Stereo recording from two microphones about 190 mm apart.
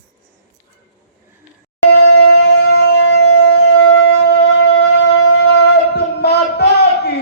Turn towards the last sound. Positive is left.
turn(degrees=60)  # may be behind; listen again after turning